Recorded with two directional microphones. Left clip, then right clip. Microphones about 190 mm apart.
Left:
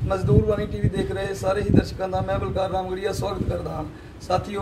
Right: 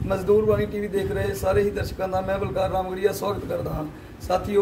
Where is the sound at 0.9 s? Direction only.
15° right (ahead or behind).